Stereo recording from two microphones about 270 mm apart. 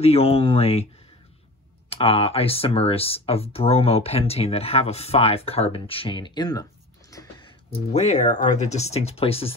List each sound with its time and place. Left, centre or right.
0.0 s speech: left
1.9 s speech: left
7.7 s speech: left